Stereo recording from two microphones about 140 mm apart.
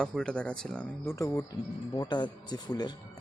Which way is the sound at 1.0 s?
20° left (ahead or behind).